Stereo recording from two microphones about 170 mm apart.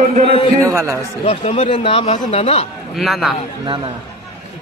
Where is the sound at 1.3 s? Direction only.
35° left (ahead or behind).